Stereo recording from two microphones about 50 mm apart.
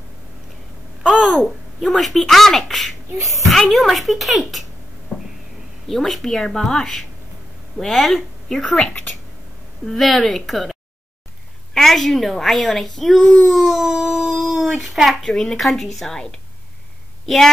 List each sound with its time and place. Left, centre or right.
1.1 s speech: centre
5.9 s speech: centre
8.6 s speech: left
9.8 s speech: centre